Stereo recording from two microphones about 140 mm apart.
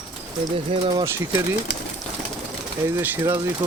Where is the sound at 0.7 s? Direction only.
40° right (ahead or behind).